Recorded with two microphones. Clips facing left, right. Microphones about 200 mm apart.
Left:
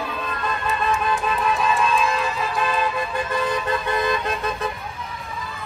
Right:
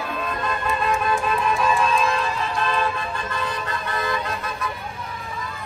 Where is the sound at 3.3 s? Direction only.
20° left (ahead or behind).